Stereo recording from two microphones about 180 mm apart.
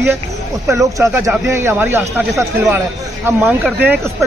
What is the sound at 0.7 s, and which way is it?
Speech, 15° right (ahead or behind).